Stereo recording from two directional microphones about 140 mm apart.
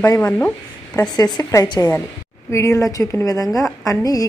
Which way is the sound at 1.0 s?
25° left (ahead or behind).